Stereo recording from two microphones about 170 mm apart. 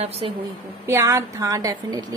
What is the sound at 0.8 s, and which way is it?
A woman's voice, 15° right (ahead or behind).